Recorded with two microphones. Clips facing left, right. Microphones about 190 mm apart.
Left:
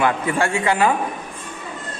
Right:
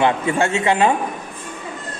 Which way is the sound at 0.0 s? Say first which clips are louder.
Right 2 dB; 25° right (ahead or behind).